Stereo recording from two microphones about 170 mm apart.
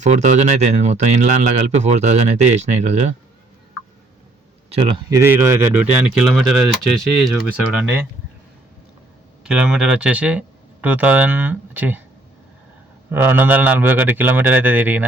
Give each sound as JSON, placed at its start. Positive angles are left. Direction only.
{"t": 0.0, "sound": "speech", "side_deg": -45}
{"t": 5.1, "sound": "a man's voice", "side_deg": -10}
{"t": 7.8, "sound": "a man's voice", "side_deg": -10}
{"t": 9.4, "sound": "speech", "side_deg": -5}
{"t": 13.1, "sound": "a man's voice", "side_deg": -10}